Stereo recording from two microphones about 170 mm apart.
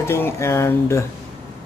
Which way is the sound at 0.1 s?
15° left (ahead or behind).